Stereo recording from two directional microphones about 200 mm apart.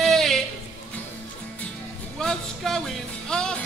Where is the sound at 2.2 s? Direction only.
Centre (ahead or behind).